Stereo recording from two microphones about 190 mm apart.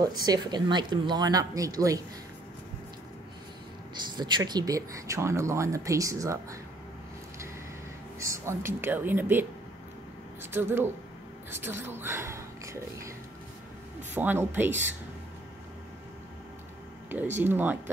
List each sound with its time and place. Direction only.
0.2 s speech: 20° right (ahead or behind)
3.9 s speech: 25° right (ahead or behind)
8.2 s speech: 15° right (ahead or behind)
10.5 s speech: 10° right (ahead or behind)
14.1 s speech: 10° right (ahead or behind)
17.4 s speech: 10° right (ahead or behind)